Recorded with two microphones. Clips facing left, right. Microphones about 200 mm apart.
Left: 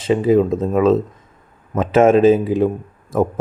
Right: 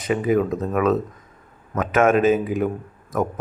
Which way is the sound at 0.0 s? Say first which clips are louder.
Left 5 dB; 30° left (ahead or behind).